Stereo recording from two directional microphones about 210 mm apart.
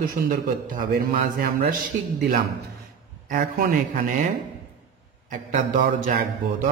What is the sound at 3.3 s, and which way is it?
A man's voice, 40° right (ahead or behind).